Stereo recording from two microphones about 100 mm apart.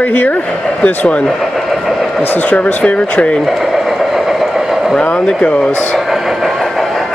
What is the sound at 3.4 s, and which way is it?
Vehicle, centre (ahead or behind).